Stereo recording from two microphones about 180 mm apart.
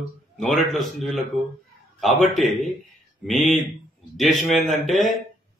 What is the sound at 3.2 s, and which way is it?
Speech, centre (ahead or behind).